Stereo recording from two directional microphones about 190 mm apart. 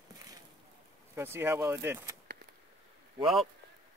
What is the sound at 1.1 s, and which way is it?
Speech, 10° right (ahead or behind).